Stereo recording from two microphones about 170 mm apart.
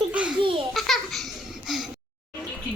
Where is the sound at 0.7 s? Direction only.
Centre (ahead or behind).